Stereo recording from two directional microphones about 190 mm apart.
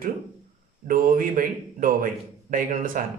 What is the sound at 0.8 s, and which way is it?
A man's voice, 45° right (ahead or behind).